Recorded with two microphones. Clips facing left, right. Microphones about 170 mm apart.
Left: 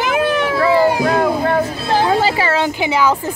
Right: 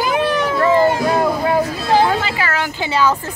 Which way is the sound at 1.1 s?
5° right (ahead or behind).